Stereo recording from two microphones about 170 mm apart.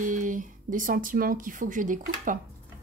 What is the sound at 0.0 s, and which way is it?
Speech, 50° right (ahead or behind).